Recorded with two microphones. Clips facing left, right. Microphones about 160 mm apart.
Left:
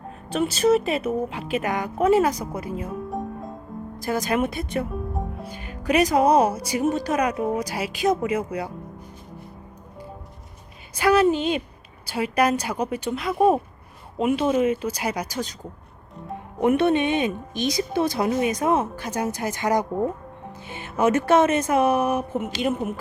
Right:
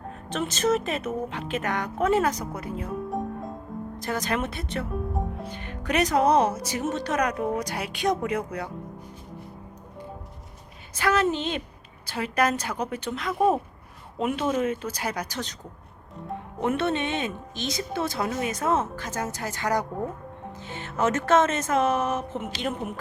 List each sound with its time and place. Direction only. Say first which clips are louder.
0.3 s speech: left 5 dB; 10° left (ahead or behind)
10.9 s speech: left 5 dB; 10° left (ahead or behind)
16.6 s speech: left 6 dB; 15° left (ahead or behind)